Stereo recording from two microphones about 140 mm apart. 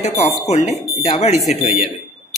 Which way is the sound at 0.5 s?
50° left (ahead or behind).